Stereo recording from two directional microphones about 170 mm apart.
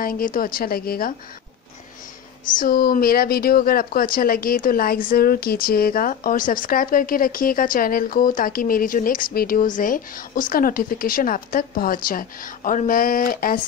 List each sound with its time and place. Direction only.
0.0 s speech: 55° left (ahead or behind)
2.5 s speech: 55° left (ahead or behind)